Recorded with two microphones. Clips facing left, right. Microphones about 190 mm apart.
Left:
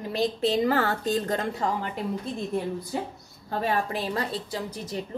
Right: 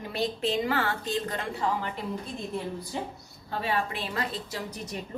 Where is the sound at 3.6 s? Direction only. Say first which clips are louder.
Left 3 dB; 40° left (ahead or behind).